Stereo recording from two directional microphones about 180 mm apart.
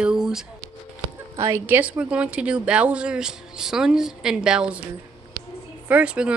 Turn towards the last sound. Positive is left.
turn(degrees=-5)  # may be behind; listen again after turning